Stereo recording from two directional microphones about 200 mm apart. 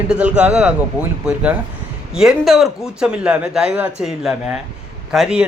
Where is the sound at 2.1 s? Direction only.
Centre (ahead or behind).